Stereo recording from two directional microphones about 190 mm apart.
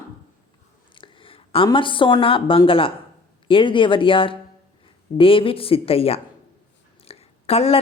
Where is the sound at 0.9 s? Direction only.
25° left (ahead or behind).